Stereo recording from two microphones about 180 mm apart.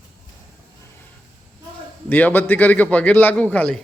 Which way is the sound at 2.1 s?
10° left (ahead or behind).